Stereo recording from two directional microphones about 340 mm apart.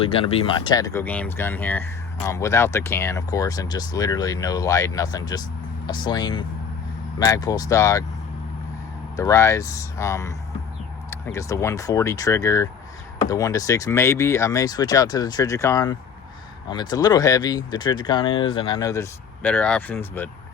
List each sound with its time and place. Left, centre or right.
0.0 s speech: centre
9.1 s speech: centre